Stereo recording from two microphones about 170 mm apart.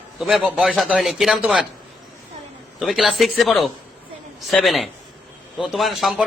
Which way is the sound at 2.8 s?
Centre (ahead or behind).